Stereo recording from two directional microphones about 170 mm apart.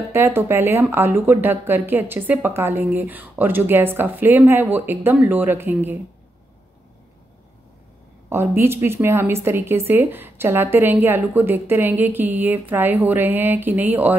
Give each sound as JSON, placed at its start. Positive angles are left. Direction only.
{"t": 0.1, "sound": "speech", "side_deg": -15}
{"t": 8.3, "sound": "speech", "side_deg": -15}